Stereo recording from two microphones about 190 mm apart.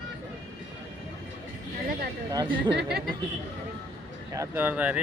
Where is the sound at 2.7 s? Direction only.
60° right (ahead or behind).